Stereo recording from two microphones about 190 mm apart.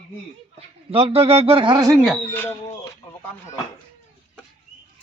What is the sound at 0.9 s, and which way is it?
A man's voice, 30° right (ahead or behind).